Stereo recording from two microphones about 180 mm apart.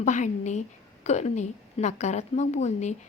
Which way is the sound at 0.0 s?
40° left (ahead or behind).